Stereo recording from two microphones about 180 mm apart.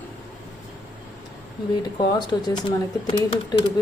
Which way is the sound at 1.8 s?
25° left (ahead or behind).